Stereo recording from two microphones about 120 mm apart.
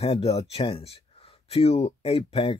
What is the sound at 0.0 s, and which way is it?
Speech, 50° left (ahead or behind).